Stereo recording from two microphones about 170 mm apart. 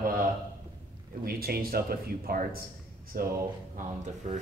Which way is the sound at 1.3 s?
60° right (ahead or behind).